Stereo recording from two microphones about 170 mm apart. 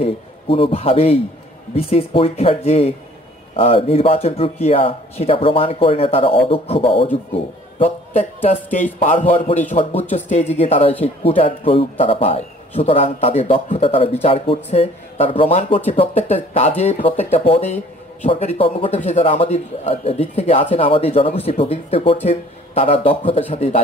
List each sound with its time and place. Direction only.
0.0 s a man's voice: 35° left (ahead or behind)
9.8 s speech: 30° left (ahead or behind)